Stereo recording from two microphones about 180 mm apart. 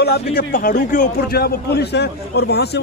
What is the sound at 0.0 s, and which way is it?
A man's voice, 60° left (ahead or behind).